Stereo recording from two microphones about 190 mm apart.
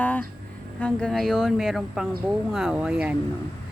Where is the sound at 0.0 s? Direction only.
5° left (ahead or behind).